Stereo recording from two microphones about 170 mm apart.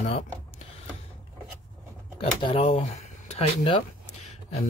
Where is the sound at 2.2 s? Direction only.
35° left (ahead or behind).